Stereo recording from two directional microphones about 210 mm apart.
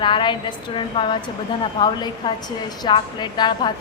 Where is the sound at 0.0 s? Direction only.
25° left (ahead or behind).